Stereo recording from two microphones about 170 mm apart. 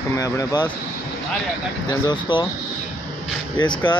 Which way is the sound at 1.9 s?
25° left (ahead or behind).